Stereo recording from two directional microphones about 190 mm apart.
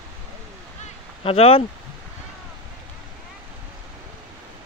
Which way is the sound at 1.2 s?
30° left (ahead or behind).